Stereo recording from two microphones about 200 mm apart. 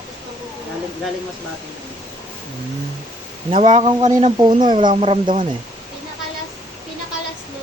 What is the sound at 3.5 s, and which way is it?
Speech, 30° right (ahead or behind).